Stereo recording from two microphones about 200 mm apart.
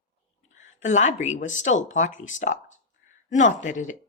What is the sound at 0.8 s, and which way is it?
Speech, 35° left (ahead or behind).